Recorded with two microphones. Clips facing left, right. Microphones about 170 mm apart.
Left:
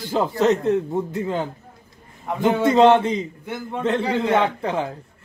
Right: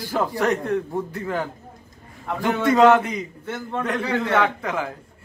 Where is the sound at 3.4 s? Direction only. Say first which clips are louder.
Even; 15° left (ahead or behind).